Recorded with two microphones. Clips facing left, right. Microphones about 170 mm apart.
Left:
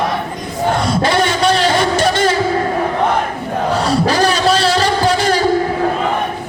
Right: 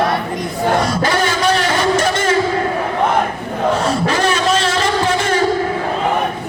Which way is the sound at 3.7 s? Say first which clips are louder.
Left 5 dB; 35° left (ahead or behind).